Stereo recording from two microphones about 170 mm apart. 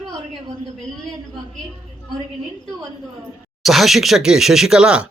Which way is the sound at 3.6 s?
Centre (ahead or behind).